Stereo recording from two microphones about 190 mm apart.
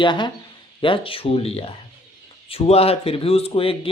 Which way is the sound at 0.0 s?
25° left (ahead or behind).